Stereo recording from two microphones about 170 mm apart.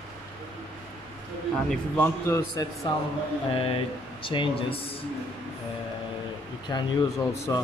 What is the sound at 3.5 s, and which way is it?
Speech, 35° left (ahead or behind).